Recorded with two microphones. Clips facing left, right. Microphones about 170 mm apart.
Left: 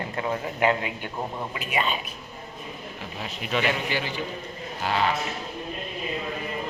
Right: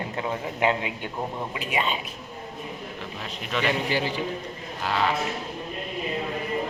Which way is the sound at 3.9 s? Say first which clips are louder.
Right 3 dB; 35° right (ahead or behind).